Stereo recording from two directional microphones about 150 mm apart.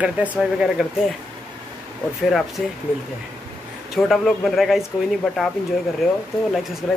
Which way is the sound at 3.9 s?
Centre (ahead or behind).